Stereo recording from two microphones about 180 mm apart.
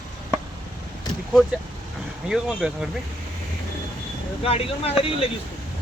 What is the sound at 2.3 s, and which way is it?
Speech, centre (ahead or behind).